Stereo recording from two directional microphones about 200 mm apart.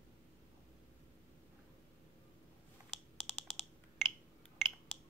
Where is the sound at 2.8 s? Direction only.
20° right (ahead or behind).